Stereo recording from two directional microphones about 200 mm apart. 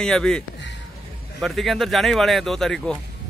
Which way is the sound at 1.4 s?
Centre (ahead or behind).